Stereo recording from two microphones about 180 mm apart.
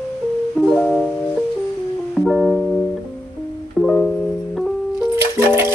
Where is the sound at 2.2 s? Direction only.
Centre (ahead or behind).